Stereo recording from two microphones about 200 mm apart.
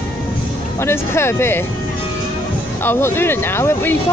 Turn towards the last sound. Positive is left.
turn(degrees=10)  # may be behind; listen again after turning